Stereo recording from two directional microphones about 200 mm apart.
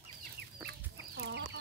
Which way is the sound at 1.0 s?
60° right (ahead or behind).